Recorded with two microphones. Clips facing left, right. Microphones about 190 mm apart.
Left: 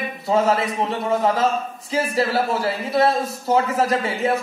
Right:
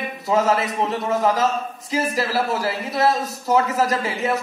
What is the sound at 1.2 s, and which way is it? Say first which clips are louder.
A woman's voice: even; 30° left (ahead or behind).